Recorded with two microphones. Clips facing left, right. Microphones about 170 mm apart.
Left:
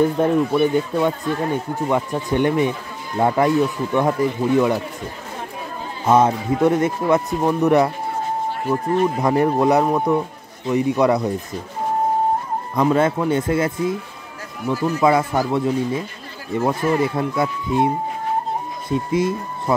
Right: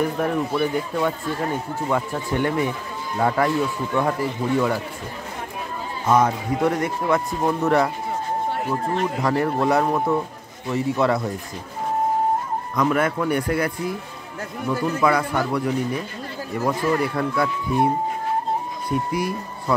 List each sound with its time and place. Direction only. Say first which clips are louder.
0.0 s speech: left 5 dB; 25° left (ahead or behind)
6.0 s speech: left 3 dB; 25° left (ahead or behind)
9.2 s speech: left 2 dB; 20° left (ahead or behind)
12.7 s speech: left 4 dB; 25° left (ahead or behind)